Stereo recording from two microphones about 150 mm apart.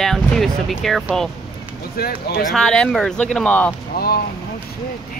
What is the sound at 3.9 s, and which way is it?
Speech, 90° left.